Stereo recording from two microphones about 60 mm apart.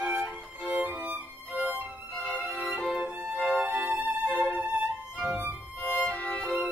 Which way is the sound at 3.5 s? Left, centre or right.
Right.